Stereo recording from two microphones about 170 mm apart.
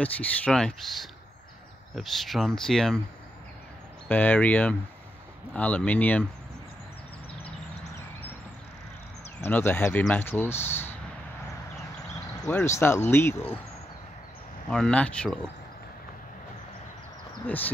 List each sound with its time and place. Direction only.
0.0 s speech: 10° left (ahead or behind)
4.1 s speech: 10° left (ahead or behind)
9.4 s speech: 10° left (ahead or behind)
12.4 s speech: 10° left (ahead or behind)
14.7 s speech: 5° left (ahead or behind)
17.5 s speech: 10° left (ahead or behind)